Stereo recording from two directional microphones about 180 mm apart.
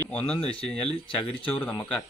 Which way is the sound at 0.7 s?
30° left (ahead or behind).